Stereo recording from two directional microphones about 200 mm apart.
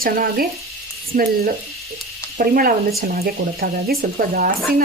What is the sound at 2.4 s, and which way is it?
Speech, 45° right (ahead or behind).